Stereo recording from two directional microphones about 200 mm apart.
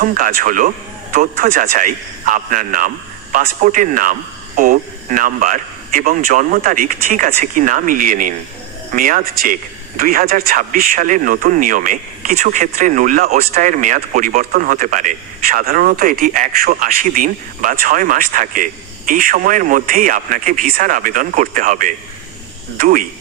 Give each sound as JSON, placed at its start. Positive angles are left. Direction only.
{"t": 0.0, "sound": "speech", "side_deg": -45}